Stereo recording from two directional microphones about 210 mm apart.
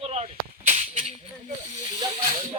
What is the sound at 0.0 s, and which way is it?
Gunshot, 30° right (ahead or behind).